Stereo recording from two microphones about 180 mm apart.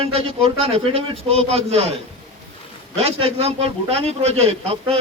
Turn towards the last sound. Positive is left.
turn(degrees=-35)  # may be behind; listen again after turning